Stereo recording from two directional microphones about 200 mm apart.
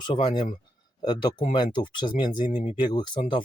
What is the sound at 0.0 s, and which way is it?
Speech, 20° left (ahead or behind).